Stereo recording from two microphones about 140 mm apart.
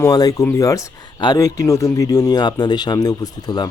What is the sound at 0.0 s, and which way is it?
Speech, 25° left (ahead or behind).